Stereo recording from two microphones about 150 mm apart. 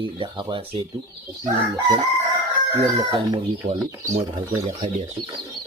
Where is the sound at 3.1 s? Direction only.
30° right (ahead or behind).